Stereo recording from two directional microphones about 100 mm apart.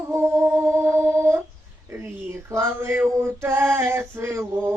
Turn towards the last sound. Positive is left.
turn(degrees=-25)  # may be behind; listen again after turning